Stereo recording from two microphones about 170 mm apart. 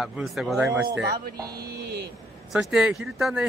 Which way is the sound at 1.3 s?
20° right (ahead or behind).